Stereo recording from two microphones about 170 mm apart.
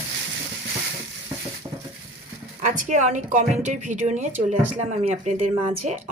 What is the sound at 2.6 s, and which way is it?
Speech, 50° right (ahead or behind).